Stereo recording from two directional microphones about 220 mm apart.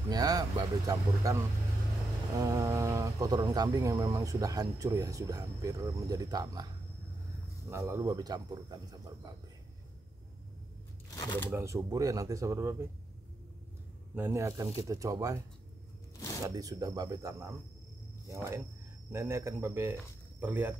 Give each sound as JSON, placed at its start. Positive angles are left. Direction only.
{"t": 0.1, "sound": "speech", "side_deg": -15}
{"t": 7.7, "sound": "speech", "side_deg": -15}
{"t": 11.1, "sound": "speech", "side_deg": 15}
{"t": 11.5, "sound": "speech", "side_deg": -15}
{"t": 14.1, "sound": "speech", "side_deg": -10}
{"t": 16.4, "sound": "speech", "side_deg": -15}